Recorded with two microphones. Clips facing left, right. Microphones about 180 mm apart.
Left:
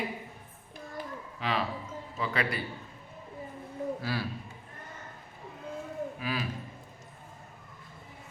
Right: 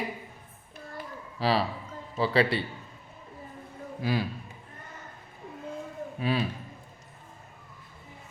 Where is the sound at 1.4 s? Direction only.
35° right (ahead or behind).